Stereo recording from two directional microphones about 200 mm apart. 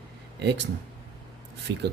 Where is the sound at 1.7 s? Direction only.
60° right (ahead or behind).